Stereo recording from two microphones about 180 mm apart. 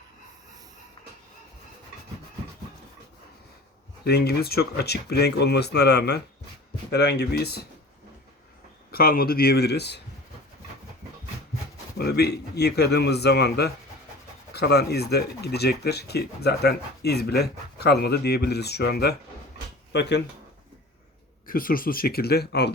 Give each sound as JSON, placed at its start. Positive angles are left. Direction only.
{"t": 4.0, "sound": "speech", "side_deg": 60}
{"t": 8.9, "sound": "speech", "side_deg": 55}
{"t": 11.9, "sound": "speech", "side_deg": 65}
{"t": 21.4, "sound": "speech", "side_deg": 50}